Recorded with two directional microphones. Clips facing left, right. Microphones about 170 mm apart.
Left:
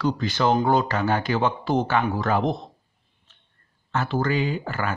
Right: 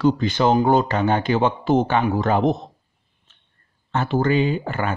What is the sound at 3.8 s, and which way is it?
Speech, 25° right (ahead or behind).